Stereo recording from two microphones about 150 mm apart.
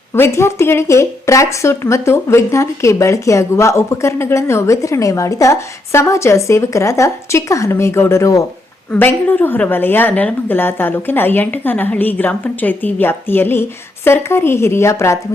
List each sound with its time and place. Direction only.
0.1 s a woman's voice: 20° left (ahead or behind)